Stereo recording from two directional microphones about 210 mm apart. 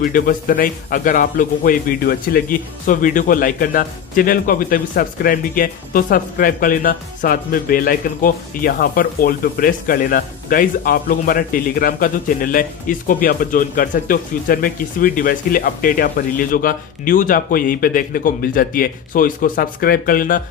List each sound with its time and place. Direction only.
0.0 s a man's voice: 40° left (ahead or behind)